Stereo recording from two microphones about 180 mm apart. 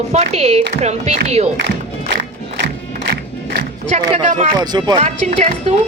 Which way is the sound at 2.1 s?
70° right (ahead or behind).